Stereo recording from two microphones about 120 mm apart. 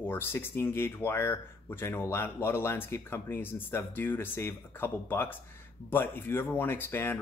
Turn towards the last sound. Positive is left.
turn(degrees=15)  # may be behind; listen again after turning